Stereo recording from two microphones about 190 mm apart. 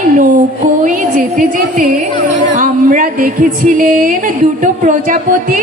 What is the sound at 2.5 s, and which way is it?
Speech, 45° right (ahead or behind).